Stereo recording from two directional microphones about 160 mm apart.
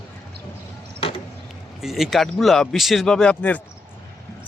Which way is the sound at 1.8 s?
Centre (ahead or behind).